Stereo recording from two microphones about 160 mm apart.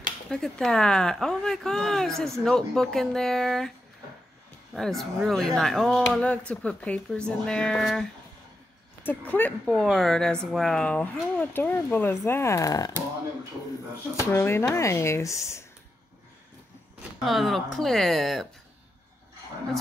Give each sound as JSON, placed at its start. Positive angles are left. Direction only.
{"t": 0.3, "sound": "speech", "side_deg": 5}
{"t": 4.7, "sound": "speech", "side_deg": 0}
{"t": 14.2, "sound": "speech", "side_deg": 15}
{"t": 17.2, "sound": "speech", "side_deg": 0}